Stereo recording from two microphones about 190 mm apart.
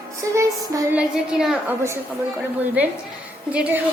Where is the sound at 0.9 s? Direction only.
5° right (ahead or behind).